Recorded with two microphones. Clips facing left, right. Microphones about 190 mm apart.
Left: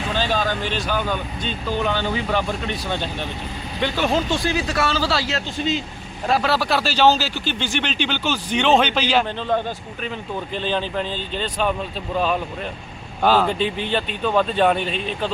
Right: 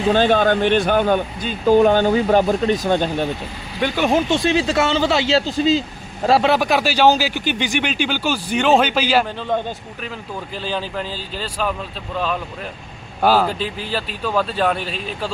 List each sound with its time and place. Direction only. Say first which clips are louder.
0.1 s speech: right 8 dB; 55° right (ahead or behind)
3.8 s speech: right 3 dB; 10° right (ahead or behind)
5.5 s speech: right 6 dB; 35° right (ahead or behind)
6.5 s speech: right 4 dB; 15° right (ahead or behind); by 12.4 s 5° left (ahead or behind)
13.2 s speech: right 1 dB; 5° right (ahead or behind)